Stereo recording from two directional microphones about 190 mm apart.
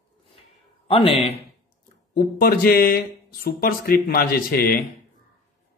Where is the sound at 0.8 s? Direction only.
30° left (ahead or behind).